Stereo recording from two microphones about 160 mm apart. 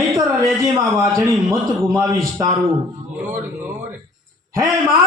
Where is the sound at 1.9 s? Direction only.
20° right (ahead or behind).